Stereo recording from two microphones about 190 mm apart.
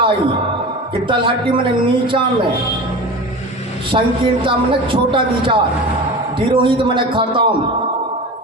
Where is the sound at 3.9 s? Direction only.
25° right (ahead or behind).